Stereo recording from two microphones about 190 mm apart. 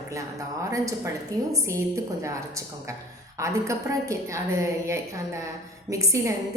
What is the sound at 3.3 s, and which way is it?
A woman's voice, 15° right (ahead or behind).